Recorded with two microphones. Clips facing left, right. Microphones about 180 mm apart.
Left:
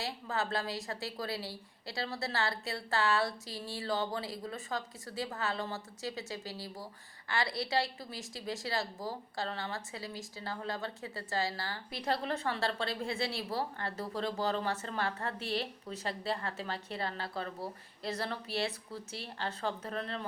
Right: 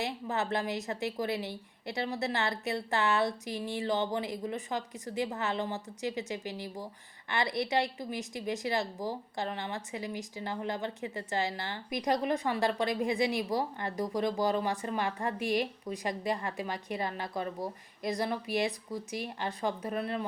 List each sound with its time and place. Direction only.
0.0 s a woman's voice: 20° right (ahead or behind)